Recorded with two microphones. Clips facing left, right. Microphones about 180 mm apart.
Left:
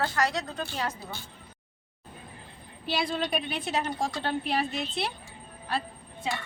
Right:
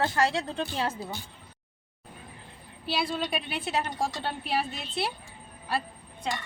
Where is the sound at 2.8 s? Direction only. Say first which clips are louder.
Left 1 dB; centre (ahead or behind).